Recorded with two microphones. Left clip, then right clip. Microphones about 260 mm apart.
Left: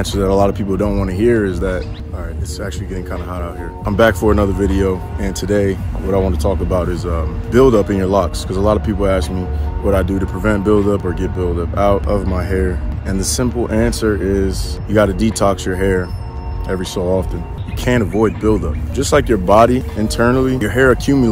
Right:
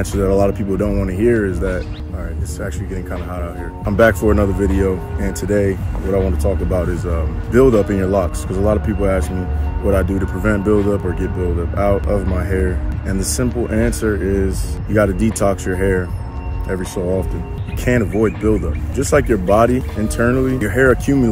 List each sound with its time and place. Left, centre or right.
0.1 s speech: centre
2.6 s speech: centre; by 8.6 s left
8.6 s speech: centre
17.8 s speech: centre